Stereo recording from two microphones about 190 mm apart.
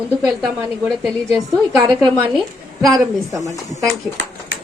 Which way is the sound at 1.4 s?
Centre (ahead or behind).